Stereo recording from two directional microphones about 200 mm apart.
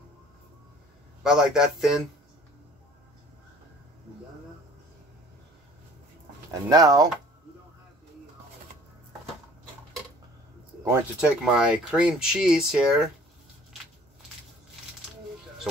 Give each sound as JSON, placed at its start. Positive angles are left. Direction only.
{"t": 1.2, "sound": "speech", "side_deg": -5}
{"t": 6.5, "sound": "speech", "side_deg": -20}
{"t": 10.9, "sound": "speech", "side_deg": -5}